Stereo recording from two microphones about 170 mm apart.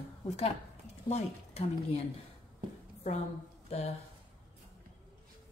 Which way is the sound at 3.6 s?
40° left (ahead or behind).